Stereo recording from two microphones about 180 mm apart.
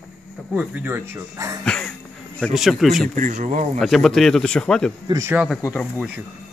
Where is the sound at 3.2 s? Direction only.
45° right (ahead or behind).